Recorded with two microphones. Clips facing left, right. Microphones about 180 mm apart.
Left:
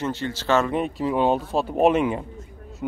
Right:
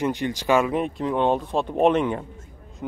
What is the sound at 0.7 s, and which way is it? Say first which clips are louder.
Speech: even; centre (ahead or behind).